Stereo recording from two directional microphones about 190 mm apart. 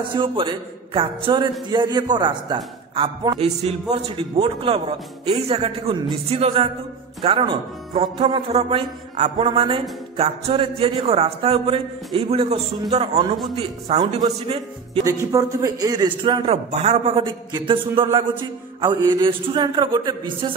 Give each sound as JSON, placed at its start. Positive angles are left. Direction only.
{"t": 0.0, "sound": "a man's voice", "side_deg": -25}
{"t": 15.0, "sound": "speech", "side_deg": -15}
{"t": 16.3, "sound": "a man's voice", "side_deg": -30}